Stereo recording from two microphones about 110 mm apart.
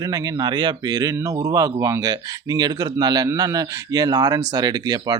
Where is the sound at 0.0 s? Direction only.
35° right (ahead or behind).